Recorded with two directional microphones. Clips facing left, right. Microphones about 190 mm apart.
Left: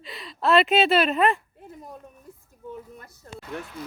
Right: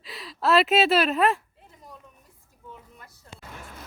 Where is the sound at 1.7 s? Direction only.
50° left (ahead or behind).